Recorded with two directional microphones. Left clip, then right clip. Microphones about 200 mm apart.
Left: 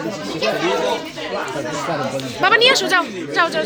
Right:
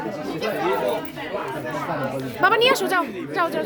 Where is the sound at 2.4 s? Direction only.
15° right (ahead or behind).